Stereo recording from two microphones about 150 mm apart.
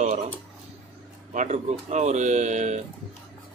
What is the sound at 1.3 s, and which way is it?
Speech, 50° right (ahead or behind).